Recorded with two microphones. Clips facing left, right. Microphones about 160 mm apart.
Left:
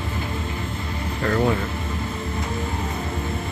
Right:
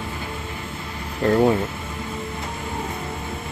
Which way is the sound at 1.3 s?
25° right (ahead or behind).